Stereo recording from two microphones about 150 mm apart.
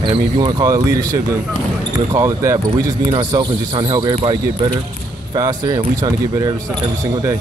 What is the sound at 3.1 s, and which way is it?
Speech, 30° right (ahead or behind).